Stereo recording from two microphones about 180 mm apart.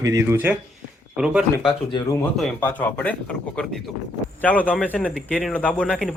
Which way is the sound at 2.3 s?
5° left (ahead or behind).